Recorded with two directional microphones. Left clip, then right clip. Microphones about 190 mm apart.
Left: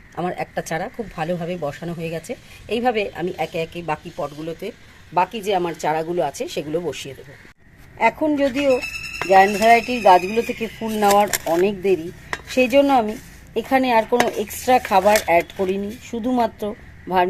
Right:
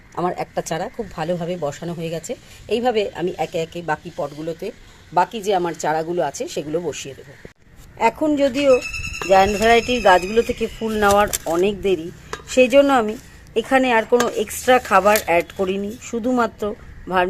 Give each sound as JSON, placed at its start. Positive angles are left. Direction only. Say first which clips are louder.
{"t": 0.2, "sound": "speech", "louder": "right 2 dB", "side_deg": -15}
{"t": 14.6, "sound": "speech", "louder": "right 1 dB", "side_deg": -10}